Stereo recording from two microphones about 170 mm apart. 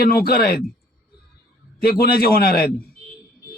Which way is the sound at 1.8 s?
65° left (ahead or behind).